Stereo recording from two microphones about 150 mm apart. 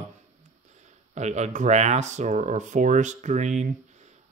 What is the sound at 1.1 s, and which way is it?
Speech, 50° right (ahead or behind).